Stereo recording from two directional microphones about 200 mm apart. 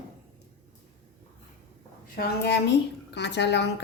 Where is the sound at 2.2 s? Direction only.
55° left (ahead or behind).